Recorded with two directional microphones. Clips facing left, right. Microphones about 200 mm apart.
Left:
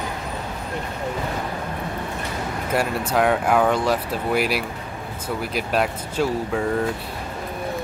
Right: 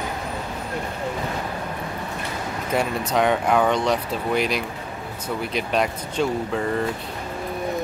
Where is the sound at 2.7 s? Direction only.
5° left (ahead or behind).